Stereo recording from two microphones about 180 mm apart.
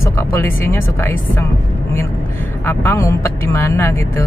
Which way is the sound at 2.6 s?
15° left (ahead or behind).